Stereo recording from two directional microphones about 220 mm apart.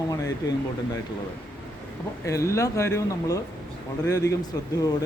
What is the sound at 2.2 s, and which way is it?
Speech, 15° left (ahead or behind).